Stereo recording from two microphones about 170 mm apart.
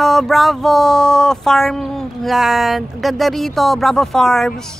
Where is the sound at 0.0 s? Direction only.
Centre (ahead or behind).